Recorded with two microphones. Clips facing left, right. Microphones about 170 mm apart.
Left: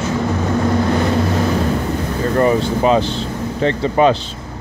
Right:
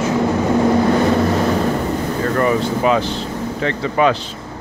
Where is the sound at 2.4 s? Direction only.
30° left (ahead or behind).